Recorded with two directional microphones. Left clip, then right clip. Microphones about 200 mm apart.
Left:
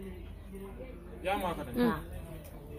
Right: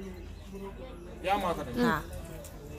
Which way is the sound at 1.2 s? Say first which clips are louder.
Right 4 dB; 15° right (ahead or behind).